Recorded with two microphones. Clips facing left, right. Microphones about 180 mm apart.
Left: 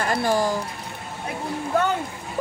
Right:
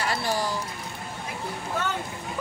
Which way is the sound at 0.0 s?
50° left (ahead or behind).